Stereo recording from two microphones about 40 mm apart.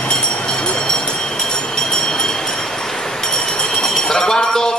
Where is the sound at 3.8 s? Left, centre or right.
Centre.